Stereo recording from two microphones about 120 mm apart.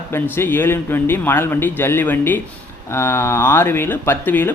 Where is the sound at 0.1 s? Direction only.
20° left (ahead or behind).